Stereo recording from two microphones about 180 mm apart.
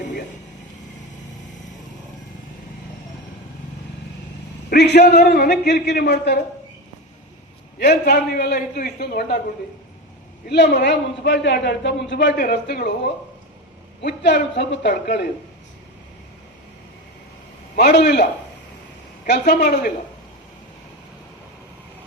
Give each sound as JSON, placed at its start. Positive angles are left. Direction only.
{"t": 4.7, "sound": "a man's voice", "side_deg": 65}
{"t": 7.8, "sound": "a man's voice", "side_deg": 65}
{"t": 10.5, "sound": "a man's voice", "side_deg": 70}
{"t": 12.4, "sound": "a man's voice", "side_deg": 60}
{"t": 14.0, "sound": "a man's voice", "side_deg": 70}
{"t": 17.7, "sound": "a man's voice", "side_deg": 65}